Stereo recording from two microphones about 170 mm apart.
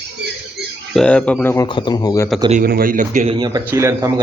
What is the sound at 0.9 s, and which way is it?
Speech, 5° left (ahead or behind).